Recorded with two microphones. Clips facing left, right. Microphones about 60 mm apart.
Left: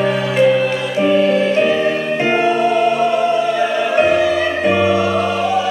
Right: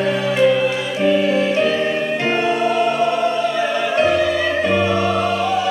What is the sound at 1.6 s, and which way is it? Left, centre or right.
Music, centre.